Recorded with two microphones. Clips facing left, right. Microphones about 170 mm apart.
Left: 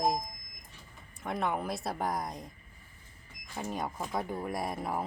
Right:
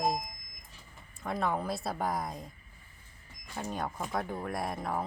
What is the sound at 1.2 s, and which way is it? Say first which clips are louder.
Speech: right 1 dB; centre (ahead or behind).